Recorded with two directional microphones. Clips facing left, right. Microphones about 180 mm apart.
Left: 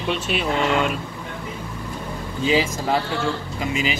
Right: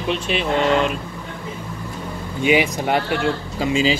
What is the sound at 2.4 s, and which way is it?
Speech, 20° right (ahead or behind).